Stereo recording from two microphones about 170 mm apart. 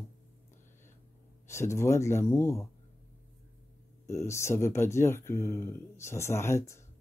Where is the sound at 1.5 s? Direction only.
15° left (ahead or behind).